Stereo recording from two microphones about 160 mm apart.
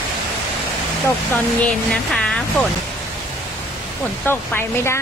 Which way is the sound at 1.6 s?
5° left (ahead or behind).